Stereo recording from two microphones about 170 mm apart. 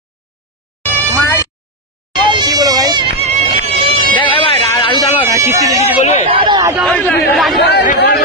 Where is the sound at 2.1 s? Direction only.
25° right (ahead or behind).